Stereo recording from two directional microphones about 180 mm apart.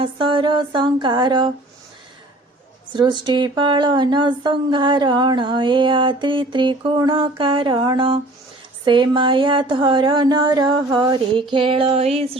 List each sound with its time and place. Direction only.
0.0 s speech: 30° right (ahead or behind)
2.9 s speech: 25° right (ahead or behind)
11.5 s a sound: 30° right (ahead or behind)